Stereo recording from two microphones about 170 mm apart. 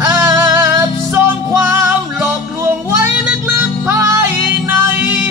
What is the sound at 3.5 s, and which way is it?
Music, 15° right (ahead or behind).